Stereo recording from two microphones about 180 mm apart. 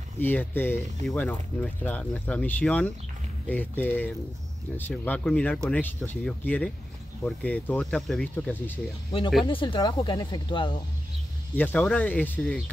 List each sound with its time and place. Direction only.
0.2 s speech: 10° left (ahead or behind)
9.4 s speech: 30° left (ahead or behind)
11.5 s speech: 10° left (ahead or behind)